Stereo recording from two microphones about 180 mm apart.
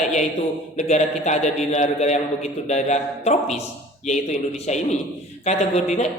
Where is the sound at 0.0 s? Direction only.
40° left (ahead or behind).